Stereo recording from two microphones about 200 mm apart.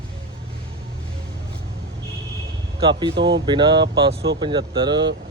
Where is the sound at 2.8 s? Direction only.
25° right (ahead or behind).